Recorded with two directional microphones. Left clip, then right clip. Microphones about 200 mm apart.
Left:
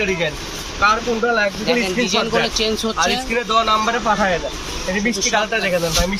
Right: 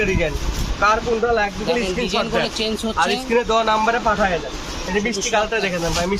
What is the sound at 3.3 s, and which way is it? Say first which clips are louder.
Speech: even; 55° right (ahead or behind).